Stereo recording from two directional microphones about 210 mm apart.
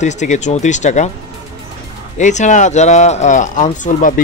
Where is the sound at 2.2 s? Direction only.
35° left (ahead or behind).